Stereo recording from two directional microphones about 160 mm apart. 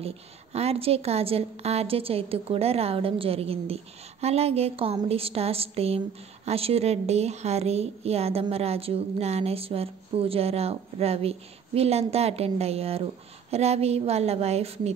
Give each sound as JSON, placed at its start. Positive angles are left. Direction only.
{"t": 0.0, "sound": "a woman's voice", "side_deg": -40}